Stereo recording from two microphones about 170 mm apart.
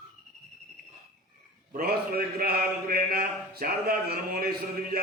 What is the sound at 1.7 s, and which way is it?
A man's voice, 60° right (ahead or behind).